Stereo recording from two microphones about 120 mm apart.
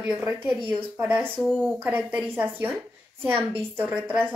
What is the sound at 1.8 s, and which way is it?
Speech, 10° right (ahead or behind).